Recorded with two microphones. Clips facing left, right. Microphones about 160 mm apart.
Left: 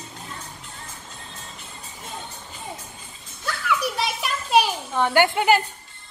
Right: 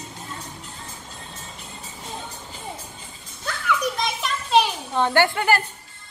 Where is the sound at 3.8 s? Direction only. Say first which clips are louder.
Right 1 dB; 10° left (ahead or behind).